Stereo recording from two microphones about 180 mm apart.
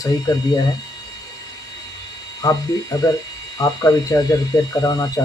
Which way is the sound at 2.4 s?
20° left (ahead or behind).